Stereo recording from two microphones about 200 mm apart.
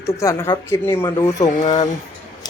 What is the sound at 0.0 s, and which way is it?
A woman's voice, 15° left (ahead or behind).